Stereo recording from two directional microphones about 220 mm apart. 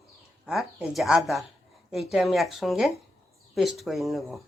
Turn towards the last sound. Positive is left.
turn(degrees=0)  # may be behind; listen again after turning